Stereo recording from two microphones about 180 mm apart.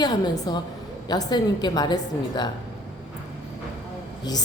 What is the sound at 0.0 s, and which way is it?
A woman's voice, 25° left (ahead or behind).